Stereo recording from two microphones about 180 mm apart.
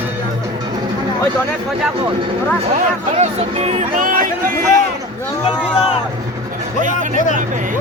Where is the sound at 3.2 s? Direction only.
35° right (ahead or behind).